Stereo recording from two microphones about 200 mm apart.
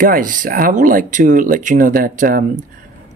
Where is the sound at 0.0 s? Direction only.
45° right (ahead or behind).